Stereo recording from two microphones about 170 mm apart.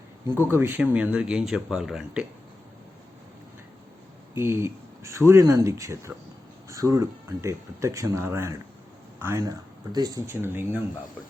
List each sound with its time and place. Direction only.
0.5 s speech: 10° right (ahead or behind)
4.4 s speech: 15° right (ahead or behind)